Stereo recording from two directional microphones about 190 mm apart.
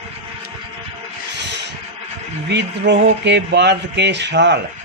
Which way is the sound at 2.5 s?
65° right (ahead or behind).